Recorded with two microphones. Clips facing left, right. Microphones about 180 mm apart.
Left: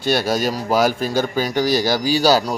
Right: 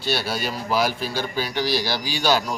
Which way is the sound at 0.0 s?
50° left (ahead or behind).